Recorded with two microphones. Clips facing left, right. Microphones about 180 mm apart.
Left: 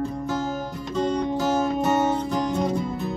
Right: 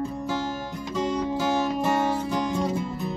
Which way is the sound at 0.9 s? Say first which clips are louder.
Left 2 dB; 5° right (ahead or behind).